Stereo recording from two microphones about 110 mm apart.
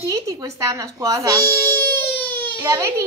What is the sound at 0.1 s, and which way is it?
A woman's voice, 30° right (ahead or behind).